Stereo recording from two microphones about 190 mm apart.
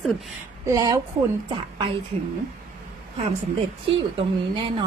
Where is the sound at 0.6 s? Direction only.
15° right (ahead or behind).